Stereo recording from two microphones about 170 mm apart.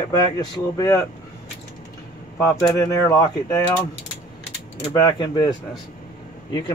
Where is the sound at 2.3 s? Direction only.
15° left (ahead or behind).